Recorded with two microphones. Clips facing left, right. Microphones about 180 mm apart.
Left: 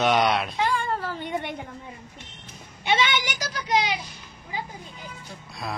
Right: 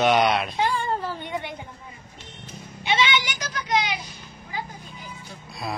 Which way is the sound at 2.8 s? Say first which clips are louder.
Even; 50° left (ahead or behind).